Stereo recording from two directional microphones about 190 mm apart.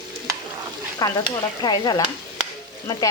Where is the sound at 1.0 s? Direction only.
20° left (ahead or behind).